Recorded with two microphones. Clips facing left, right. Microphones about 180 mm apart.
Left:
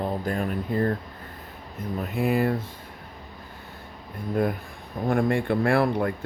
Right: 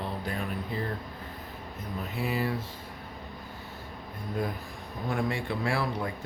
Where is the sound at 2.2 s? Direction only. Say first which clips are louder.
Left 7 dB; 50° left (ahead or behind).